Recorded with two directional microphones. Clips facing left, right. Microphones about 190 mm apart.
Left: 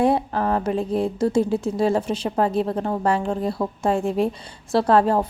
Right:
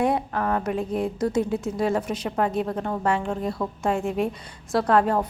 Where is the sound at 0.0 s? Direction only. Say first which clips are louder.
Left 4 dB; 30° left (ahead or behind).